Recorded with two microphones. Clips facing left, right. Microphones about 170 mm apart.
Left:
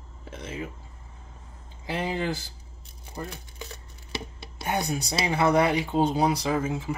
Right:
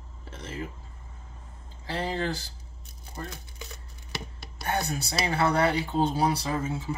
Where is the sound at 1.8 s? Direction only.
15° left (ahead or behind).